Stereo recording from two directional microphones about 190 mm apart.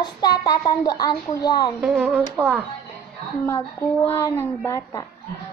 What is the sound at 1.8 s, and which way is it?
Speech, 5° right (ahead or behind).